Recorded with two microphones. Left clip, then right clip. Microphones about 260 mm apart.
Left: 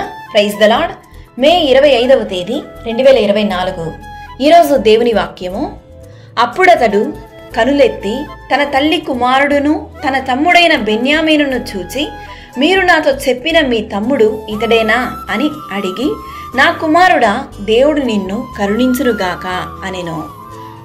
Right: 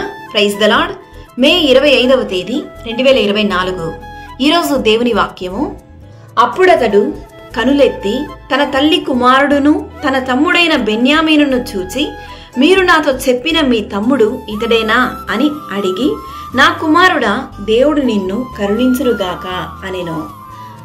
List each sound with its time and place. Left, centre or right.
0.0 s a woman's voice: centre
6.3 s speech: left
6.6 s a woman's voice: centre
18.9 s speech: left